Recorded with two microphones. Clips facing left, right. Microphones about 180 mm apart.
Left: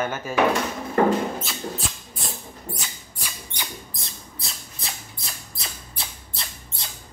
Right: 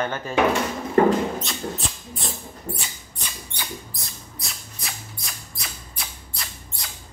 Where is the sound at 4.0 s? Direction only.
30° left (ahead or behind).